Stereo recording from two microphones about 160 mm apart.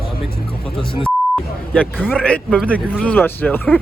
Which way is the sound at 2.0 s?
10° left (ahead or behind).